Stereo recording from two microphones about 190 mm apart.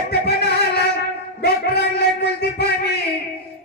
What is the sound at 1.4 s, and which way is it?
Music, 60° left (ahead or behind).